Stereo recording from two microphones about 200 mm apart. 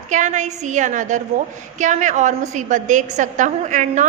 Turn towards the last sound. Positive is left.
turn(degrees=-40)  # may be behind; listen again after turning